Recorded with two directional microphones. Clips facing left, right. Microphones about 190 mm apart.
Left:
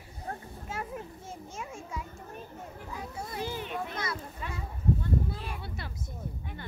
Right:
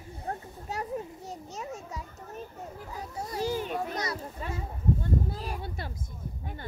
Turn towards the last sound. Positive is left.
turn(degrees=-40)  # may be behind; listen again after turning